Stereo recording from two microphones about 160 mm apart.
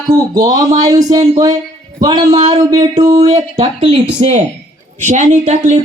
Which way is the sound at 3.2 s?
40° right (ahead or behind).